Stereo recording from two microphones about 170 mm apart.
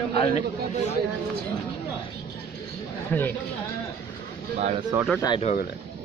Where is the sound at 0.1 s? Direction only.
35° left (ahead or behind).